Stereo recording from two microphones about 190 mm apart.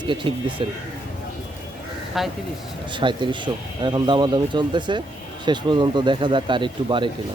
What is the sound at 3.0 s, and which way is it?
Speech, 25° right (ahead or behind).